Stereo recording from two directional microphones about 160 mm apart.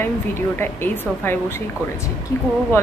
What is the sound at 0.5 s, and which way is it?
Speech, 15° left (ahead or behind).